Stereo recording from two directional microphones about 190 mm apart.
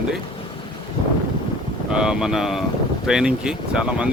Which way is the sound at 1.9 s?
5° right (ahead or behind).